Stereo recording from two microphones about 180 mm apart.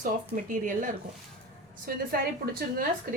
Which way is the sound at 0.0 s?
45° right (ahead or behind).